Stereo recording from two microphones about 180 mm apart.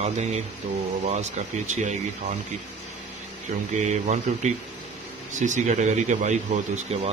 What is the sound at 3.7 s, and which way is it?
Speech, 40° right (ahead or behind).